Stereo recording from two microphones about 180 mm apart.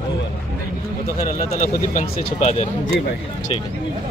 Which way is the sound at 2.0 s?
35° left (ahead or behind).